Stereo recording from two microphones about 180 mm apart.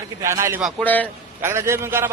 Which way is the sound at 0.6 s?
5° left (ahead or behind).